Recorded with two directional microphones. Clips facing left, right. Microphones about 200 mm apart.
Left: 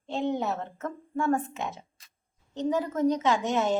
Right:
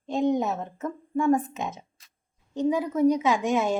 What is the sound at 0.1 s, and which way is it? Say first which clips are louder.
Speech: right 4 dB; 15° right (ahead or behind).